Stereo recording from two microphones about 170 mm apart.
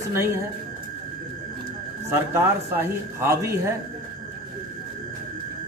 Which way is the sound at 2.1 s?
15° right (ahead or behind).